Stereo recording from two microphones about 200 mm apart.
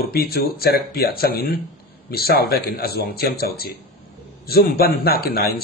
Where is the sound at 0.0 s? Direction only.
50° left (ahead or behind).